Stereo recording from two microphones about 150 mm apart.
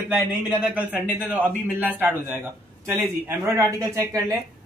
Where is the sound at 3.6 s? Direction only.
20° right (ahead or behind).